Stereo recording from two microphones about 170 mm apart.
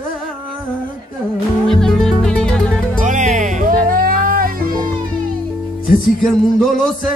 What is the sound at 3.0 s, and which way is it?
Music, 45° right (ahead or behind).